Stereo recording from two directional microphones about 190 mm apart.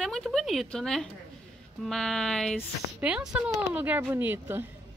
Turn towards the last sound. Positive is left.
turn(degrees=-10)  # may be behind; listen again after turning